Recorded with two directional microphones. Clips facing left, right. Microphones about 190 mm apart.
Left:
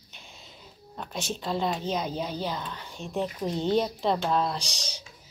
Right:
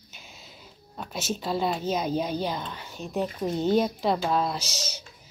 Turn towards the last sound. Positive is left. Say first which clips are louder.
# right 2 dB
turn(degrees=-5)  # may be behind; listen again after turning